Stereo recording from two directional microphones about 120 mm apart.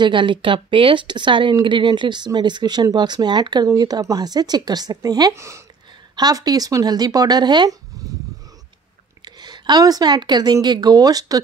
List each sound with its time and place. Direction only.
0.0 s speech: 40° right (ahead or behind)
9.2 s a woman's voice: 35° right (ahead or behind)